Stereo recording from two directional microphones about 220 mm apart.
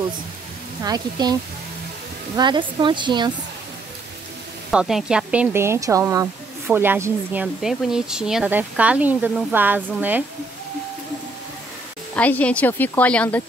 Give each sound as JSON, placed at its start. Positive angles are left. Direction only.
{"t": 0.8, "sound": "speech", "side_deg": -20}
{"t": 2.3, "sound": "speech", "side_deg": -20}
{"t": 4.6, "sound": "speech", "side_deg": 0}
{"t": 12.2, "sound": "a woman's voice", "side_deg": 5}